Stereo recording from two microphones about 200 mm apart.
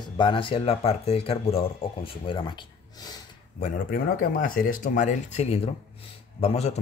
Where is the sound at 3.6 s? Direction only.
40° left (ahead or behind).